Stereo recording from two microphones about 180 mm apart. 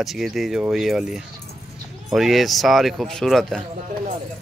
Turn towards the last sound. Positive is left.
turn(degrees=0)  # may be behind; listen again after turning